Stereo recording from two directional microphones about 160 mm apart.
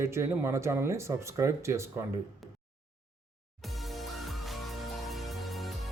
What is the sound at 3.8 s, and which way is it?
Music, centre (ahead or behind).